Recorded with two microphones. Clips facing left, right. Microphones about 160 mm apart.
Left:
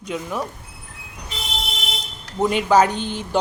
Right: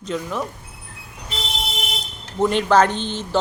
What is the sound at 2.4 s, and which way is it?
Speech, 10° left (ahead or behind).